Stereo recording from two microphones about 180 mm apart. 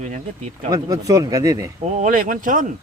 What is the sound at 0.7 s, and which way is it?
Speech, 20° right (ahead or behind).